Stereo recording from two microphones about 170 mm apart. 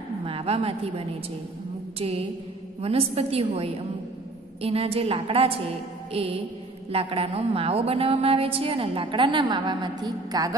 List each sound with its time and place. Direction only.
0.2 s a woman's voice: 35° right (ahead or behind)
2.0 s music: 35° right (ahead or behind)
2.8 s a woman's voice: 35° right (ahead or behind)